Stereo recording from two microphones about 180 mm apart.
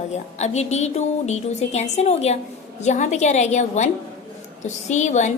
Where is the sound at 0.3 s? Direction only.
40° left (ahead or behind).